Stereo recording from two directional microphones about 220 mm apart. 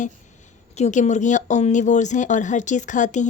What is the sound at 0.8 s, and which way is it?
Speech, 30° left (ahead or behind).